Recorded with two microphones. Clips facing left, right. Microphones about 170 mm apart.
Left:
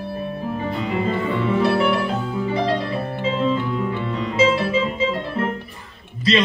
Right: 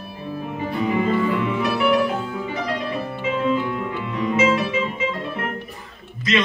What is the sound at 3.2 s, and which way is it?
Music, 30° left (ahead or behind).